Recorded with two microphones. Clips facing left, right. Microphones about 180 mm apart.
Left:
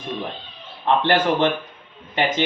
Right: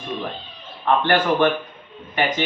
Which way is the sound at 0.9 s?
25° left (ahead or behind).